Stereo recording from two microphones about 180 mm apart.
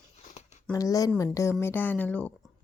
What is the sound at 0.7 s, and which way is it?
Speech, 20° left (ahead or behind).